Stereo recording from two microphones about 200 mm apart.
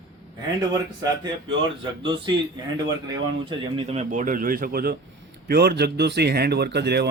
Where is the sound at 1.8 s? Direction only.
25° right (ahead or behind).